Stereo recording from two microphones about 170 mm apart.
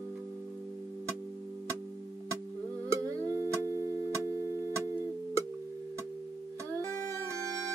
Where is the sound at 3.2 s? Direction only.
15° right (ahead or behind).